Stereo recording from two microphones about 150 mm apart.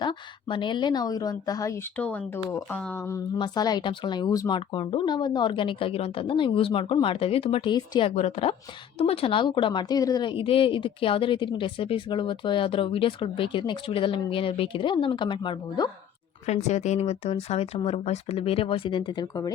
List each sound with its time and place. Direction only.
0.0 s a woman's voice: 30° left (ahead or behind); by 3.2 s 15° left (ahead or behind)
3.3 s a woman's voice: 30° left (ahead or behind)
8.1 s a woman's voice: 45° left (ahead or behind); by 15.9 s 30° left (ahead or behind)
16.5 s a woman's voice: 50° left (ahead or behind); by 19.5 s 25° left (ahead or behind)